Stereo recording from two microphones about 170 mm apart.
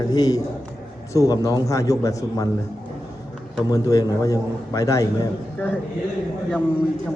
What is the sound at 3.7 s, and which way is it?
A man's voice, 20° left (ahead or behind).